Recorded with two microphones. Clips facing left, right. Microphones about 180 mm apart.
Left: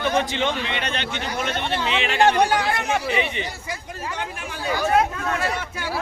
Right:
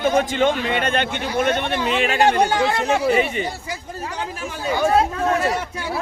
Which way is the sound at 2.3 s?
25° right (ahead or behind).